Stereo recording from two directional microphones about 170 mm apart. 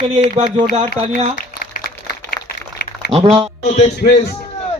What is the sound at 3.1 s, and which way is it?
Speech, 35° right (ahead or behind).